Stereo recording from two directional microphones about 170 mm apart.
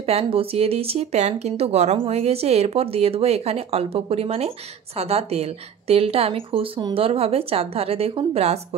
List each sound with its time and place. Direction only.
0.0 s speech: 35° right (ahead or behind)